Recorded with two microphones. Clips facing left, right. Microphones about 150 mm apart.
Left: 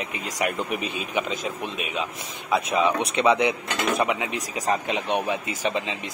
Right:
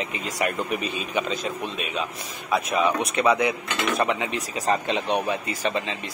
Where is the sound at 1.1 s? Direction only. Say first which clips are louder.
Right 1 dB; 15° left (ahead or behind).